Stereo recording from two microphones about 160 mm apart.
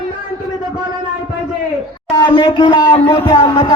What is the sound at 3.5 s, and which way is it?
Music, 20° left (ahead or behind).